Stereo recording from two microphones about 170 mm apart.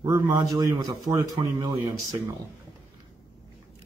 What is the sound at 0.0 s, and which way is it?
Speech, 25° right (ahead or behind).